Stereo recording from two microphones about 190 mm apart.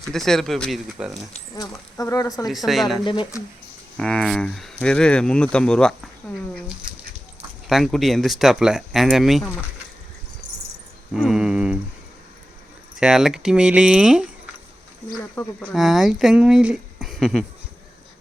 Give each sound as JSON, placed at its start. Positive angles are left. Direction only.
{"t": 0.0, "sound": "speech", "side_deg": 0}
{"t": 1.5, "sound": "speech", "side_deg": 15}
{"t": 2.6, "sound": "speech", "side_deg": 0}
{"t": 3.0, "sound": "speech", "side_deg": 25}
{"t": 3.9, "sound": "speech", "side_deg": 5}
{"t": 7.7, "sound": "speech", "side_deg": 0}
{"t": 11.1, "sound": "a sound", "side_deg": 0}
{"t": 13.0, "sound": "speech", "side_deg": -5}
{"t": 15.4, "sound": "speech", "side_deg": 10}
{"t": 15.7, "sound": "speech", "side_deg": 0}